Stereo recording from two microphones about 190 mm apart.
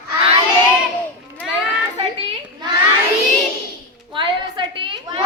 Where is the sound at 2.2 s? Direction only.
30° right (ahead or behind).